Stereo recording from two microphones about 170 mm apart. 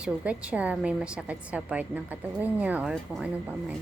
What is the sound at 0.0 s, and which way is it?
A woman's voice, 5° right (ahead or behind).